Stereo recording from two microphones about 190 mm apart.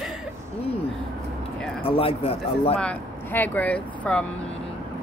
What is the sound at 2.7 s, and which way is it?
Speech, 10° left (ahead or behind).